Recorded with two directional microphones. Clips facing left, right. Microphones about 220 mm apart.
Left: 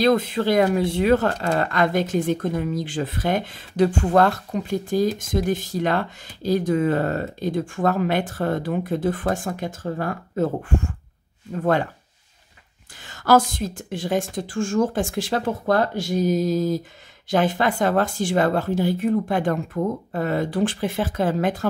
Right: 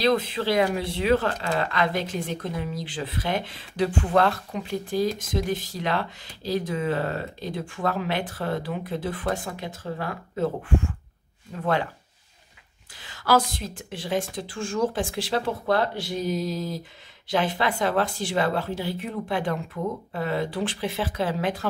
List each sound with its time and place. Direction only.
0.0 s speech: 45° left (ahead or behind)
13.0 s speech: 45° left (ahead or behind)